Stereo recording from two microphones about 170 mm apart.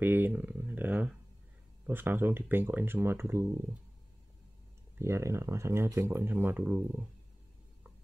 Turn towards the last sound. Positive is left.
turn(degrees=-10)  # may be behind; listen again after turning